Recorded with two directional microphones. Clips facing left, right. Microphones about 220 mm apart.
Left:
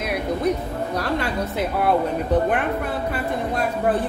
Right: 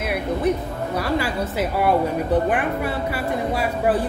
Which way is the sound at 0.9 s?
5° right (ahead or behind).